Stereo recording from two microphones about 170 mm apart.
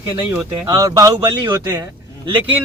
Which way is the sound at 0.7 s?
20° right (ahead or behind).